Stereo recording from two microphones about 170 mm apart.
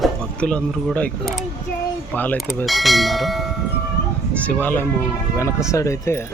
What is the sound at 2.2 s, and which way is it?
Clang, 10° left (ahead or behind).